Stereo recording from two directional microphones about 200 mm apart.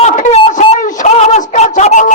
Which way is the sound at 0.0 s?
35° left (ahead or behind).